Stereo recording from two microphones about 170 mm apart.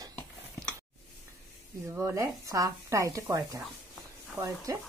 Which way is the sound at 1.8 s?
15° right (ahead or behind).